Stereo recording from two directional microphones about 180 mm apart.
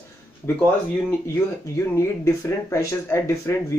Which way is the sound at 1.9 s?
15° left (ahead or behind).